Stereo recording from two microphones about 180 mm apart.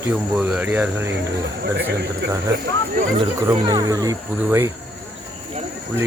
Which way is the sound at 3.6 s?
20° right (ahead or behind).